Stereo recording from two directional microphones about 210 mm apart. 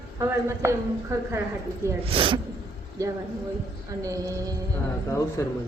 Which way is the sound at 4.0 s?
15° right (ahead or behind).